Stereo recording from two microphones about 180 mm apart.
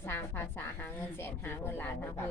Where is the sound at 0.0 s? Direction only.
10° left (ahead or behind).